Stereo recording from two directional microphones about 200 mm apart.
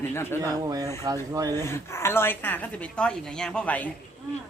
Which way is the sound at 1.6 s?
15° left (ahead or behind).